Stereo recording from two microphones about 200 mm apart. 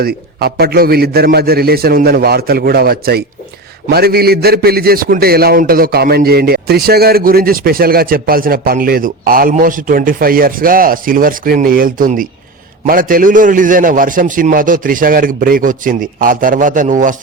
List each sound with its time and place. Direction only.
0.0 s a man's voice: 50° right (ahead or behind)